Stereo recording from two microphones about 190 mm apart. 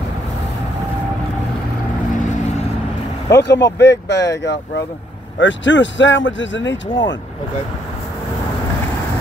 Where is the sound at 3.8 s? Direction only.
65° left (ahead or behind).